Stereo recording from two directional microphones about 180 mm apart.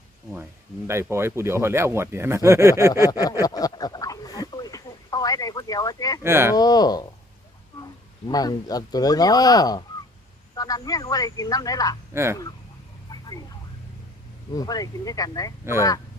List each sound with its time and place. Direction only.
0.9 s speech: 15° right (ahead or behind)
3.1 s speech: 20° left (ahead or behind)
3.4 s a sound: 20° left (ahead or behind)
6.2 s speech: 15° right (ahead or behind)
6.6 s speech: 20° left (ahead or behind)
8.3 s speech: 20° left (ahead or behind)
12.1 s speech: 15° right (ahead or behind)
13.1 s a sound: 20° left (ahead or behind)
14.5 s speech: 20° left (ahead or behind)